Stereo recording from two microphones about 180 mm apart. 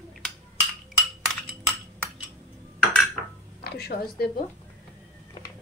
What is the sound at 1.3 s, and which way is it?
Chink, centre (ahead or behind).